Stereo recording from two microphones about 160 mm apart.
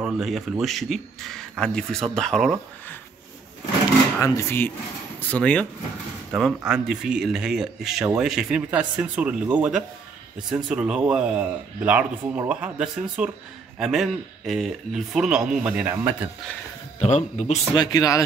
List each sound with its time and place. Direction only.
0.0 s speech: centre (ahead or behind)
4.2 s speech: 15° left (ahead or behind)
6.3 s speech: 5° right (ahead or behind)
17.0 s speech: 45° left (ahead or behind)
17.7 s speech: 20° left (ahead or behind)